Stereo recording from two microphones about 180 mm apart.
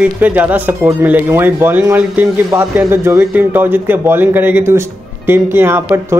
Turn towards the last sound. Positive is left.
turn(degrees=-15)  # may be behind; listen again after turning